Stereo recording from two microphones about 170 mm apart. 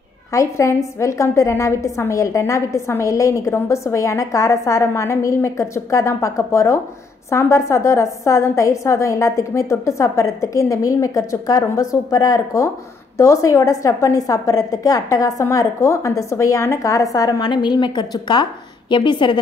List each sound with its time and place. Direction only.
0.3 s a woman's voice: 15° left (ahead or behind)